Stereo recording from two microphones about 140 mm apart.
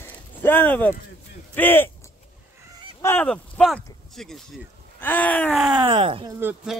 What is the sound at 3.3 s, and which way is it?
Speech, 5° left (ahead or behind).